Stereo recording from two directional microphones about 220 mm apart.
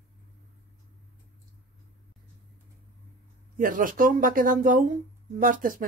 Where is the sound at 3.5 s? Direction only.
40° right (ahead or behind).